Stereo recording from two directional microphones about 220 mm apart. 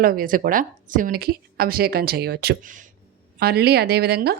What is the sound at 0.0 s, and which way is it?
A woman's voice, 40° right (ahead or behind).